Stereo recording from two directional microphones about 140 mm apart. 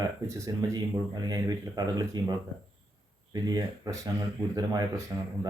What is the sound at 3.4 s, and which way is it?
Speech, 30° right (ahead or behind).